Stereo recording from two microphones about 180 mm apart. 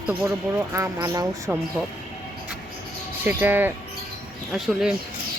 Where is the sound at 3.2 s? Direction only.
10° right (ahead or behind).